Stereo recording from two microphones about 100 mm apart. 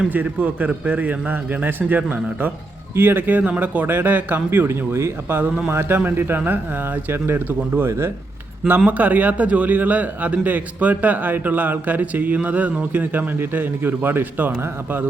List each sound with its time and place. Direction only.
0.0 s a man's voice: 15° right (ahead or behind)